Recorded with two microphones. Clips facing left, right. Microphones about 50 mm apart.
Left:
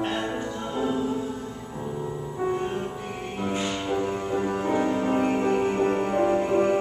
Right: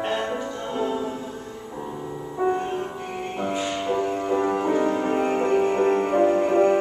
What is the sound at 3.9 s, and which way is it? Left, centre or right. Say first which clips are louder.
Music: right 4 dB; centre.